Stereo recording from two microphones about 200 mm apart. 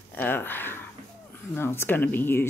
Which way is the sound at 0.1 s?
10° left (ahead or behind).